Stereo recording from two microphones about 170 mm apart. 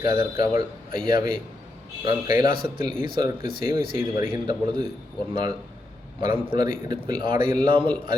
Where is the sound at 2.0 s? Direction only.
25° right (ahead or behind).